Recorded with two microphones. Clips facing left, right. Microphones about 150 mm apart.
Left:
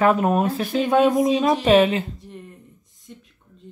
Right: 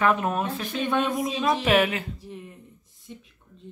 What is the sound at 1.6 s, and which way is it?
Speech, 25° left (ahead or behind).